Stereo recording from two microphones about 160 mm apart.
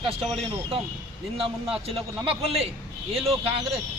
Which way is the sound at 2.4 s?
40° right (ahead or behind).